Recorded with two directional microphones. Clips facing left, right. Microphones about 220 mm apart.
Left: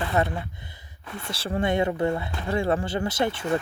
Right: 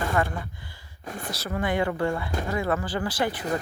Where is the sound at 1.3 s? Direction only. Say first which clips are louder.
Left 3 dB; 30° left (ahead or behind).